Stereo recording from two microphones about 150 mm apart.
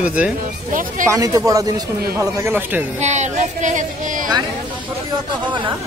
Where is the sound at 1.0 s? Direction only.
20° right (ahead or behind).